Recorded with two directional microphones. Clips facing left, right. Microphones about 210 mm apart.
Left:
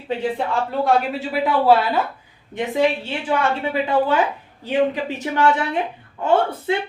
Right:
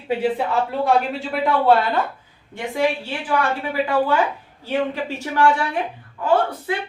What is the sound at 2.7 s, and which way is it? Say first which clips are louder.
Speech: left 1 dB; 20° left (ahead or behind).